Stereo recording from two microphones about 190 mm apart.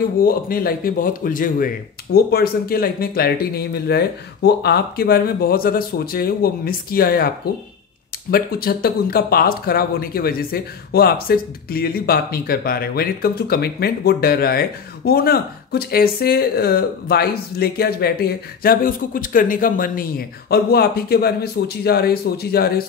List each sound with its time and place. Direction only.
0.2 s speech: 50° left (ahead or behind)
8.3 s speech: 50° left (ahead or behind)